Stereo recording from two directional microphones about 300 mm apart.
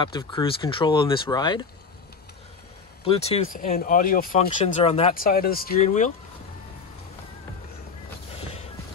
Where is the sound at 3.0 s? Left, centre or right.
Centre.